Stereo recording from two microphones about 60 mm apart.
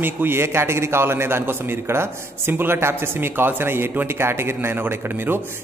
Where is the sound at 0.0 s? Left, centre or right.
Right.